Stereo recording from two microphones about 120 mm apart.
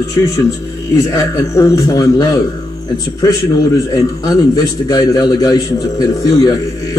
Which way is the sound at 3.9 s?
30° left (ahead or behind).